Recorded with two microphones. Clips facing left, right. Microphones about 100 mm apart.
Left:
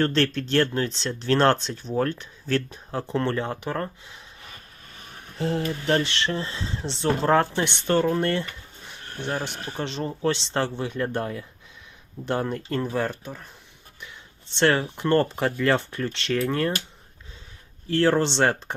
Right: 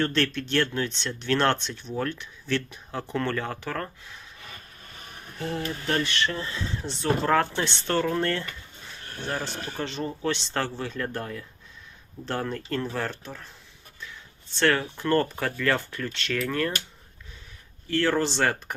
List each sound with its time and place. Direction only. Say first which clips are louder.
0.0 s speech: left 3 dB; 35° left (ahead or behind)
5.4 s speech: left 5 dB; 25° left (ahead or behind); by 13.5 s 10° left (ahead or behind)
14.0 s speech: right 1 dB; 20° left (ahead or behind)
17.8 s speech: left 3 dB; 30° left (ahead or behind)